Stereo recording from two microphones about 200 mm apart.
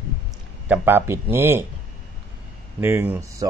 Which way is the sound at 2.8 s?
10° right (ahead or behind).